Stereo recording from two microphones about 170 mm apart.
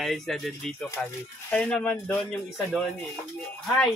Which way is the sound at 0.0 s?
Centre (ahead or behind).